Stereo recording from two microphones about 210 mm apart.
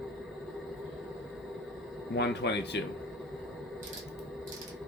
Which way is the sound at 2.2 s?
55° left (ahead or behind).